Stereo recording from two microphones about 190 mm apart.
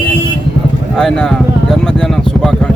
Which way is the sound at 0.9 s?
5° left (ahead or behind).